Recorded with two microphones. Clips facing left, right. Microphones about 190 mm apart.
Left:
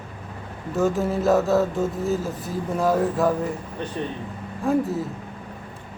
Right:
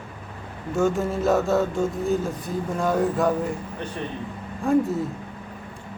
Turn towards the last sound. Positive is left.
turn(degrees=0)  # may be behind; listen again after turning